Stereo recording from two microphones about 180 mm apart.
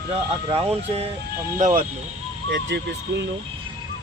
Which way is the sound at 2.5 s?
80° right.